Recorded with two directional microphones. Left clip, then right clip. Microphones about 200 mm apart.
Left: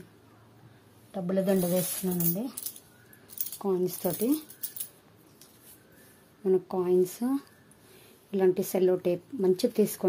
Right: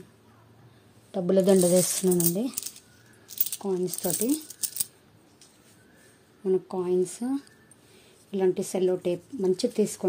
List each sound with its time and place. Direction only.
1.1 s speech: 35° right (ahead or behind)
3.5 s speech: centre (ahead or behind)
6.4 s speech: centre (ahead or behind)